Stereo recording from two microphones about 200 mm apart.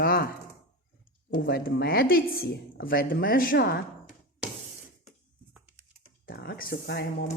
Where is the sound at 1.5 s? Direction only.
50° left (ahead or behind).